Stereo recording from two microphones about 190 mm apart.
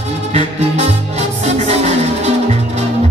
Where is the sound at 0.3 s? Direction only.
35° right (ahead or behind).